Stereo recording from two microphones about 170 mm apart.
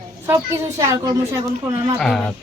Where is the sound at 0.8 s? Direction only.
20° right (ahead or behind).